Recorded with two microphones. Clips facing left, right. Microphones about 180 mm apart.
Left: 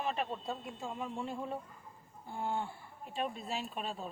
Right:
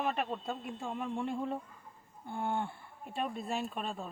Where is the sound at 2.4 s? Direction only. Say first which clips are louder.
Right 2 dB; 55° right (ahead or behind).